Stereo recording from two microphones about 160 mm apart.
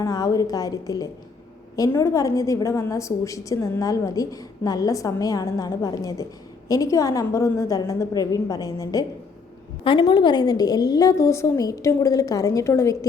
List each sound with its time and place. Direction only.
0.0 s a woman's voice: 20° left (ahead or behind)